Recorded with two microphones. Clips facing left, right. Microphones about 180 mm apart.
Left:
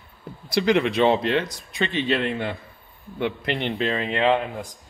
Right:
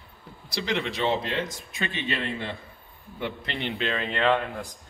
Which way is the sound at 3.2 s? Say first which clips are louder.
Left 7 dB; 65° left (ahead or behind).